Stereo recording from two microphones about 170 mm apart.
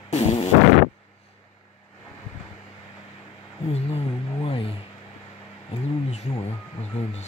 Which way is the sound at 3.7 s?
35° left (ahead or behind).